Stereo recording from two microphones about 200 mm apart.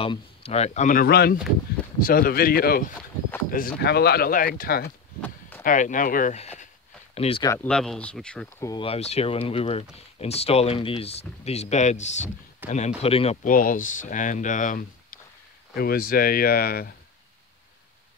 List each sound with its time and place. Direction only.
0.0 s speech: 30° left (ahead or behind)
7.4 s speech: 10° left (ahead or behind)
8.6 s speech: 25° left (ahead or behind)
13.4 s speech: 45° left (ahead or behind)